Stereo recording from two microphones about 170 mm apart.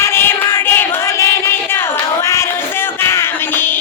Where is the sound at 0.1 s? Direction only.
15° left (ahead or behind).